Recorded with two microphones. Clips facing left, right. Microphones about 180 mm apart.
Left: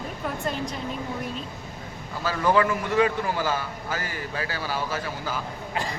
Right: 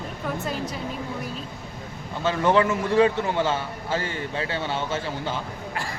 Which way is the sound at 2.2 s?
25° right (ahead or behind).